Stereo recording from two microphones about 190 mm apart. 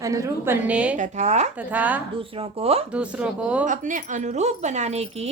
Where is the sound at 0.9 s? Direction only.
35° right (ahead or behind).